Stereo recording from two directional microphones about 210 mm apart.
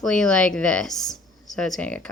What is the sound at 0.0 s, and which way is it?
A woman's voice, 5° left (ahead or behind).